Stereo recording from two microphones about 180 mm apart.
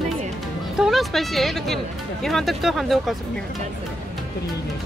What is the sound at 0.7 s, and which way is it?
Speech, centre (ahead or behind).